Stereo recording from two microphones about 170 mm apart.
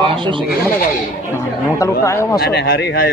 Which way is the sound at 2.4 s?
70° left (ahead or behind).